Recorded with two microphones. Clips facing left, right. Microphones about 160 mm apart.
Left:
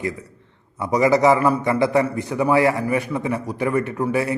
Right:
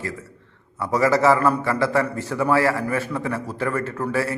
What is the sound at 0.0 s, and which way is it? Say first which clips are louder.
A man's voice: left 4 dB; 15° left (ahead or behind).